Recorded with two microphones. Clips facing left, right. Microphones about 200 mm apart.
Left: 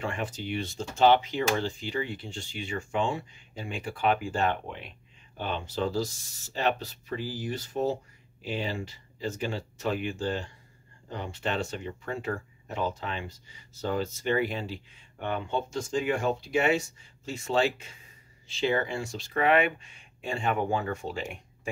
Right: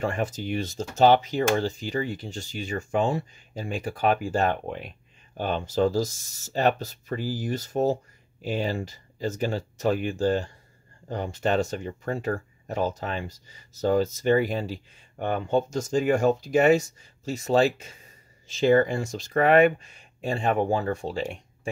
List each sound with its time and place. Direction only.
0.0 s speech: 40° right (ahead or behind)